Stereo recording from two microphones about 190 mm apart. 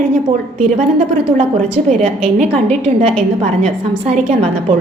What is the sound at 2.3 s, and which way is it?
A woman's voice, 35° right (ahead or behind).